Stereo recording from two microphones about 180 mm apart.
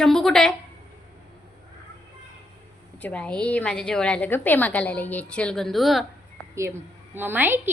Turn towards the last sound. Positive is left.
turn(degrees=-10)  # may be behind; listen again after turning